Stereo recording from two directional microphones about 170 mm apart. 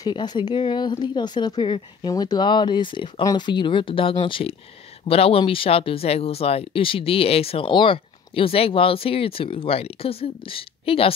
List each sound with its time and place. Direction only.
0.0 s speech: 25° left (ahead or behind)